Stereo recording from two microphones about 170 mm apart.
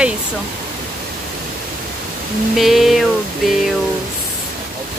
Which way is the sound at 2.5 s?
Centre (ahead or behind).